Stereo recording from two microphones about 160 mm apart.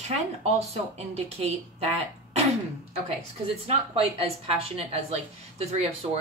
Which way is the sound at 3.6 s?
35° right (ahead or behind).